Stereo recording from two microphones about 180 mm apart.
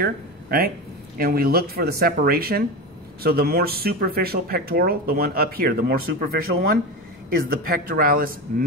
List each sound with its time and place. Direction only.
0.0 s speech: 60° right (ahead or behind)